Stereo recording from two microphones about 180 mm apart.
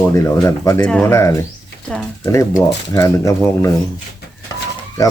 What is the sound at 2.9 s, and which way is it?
Speech, 15° left (ahead or behind).